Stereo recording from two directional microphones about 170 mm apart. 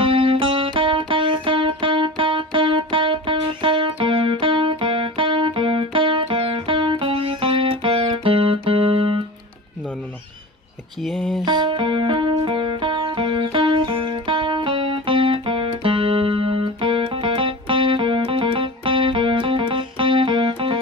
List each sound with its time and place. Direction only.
0.0 s music: 30° right (ahead or behind)
11.0 s a sound: centre (ahead or behind)
11.4 s music: 25° right (ahead or behind)